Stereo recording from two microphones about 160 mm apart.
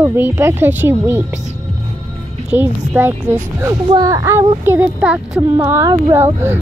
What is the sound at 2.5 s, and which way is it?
Speech, 10° right (ahead or behind).